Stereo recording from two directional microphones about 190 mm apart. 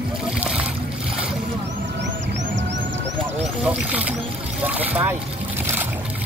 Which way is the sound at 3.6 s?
5° right (ahead or behind).